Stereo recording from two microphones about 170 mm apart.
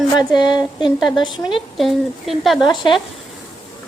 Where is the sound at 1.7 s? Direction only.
Centre (ahead or behind).